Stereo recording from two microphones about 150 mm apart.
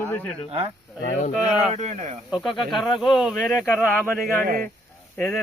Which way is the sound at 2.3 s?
Centre (ahead or behind).